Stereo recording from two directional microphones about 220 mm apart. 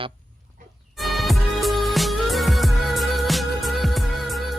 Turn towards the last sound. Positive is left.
turn(degrees=0)  # may be behind; listen again after turning